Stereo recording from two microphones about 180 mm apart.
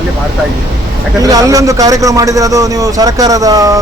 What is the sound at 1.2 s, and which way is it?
A man's voice, 20° right (ahead or behind).